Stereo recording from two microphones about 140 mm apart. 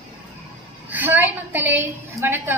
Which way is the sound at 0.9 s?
10° right (ahead or behind).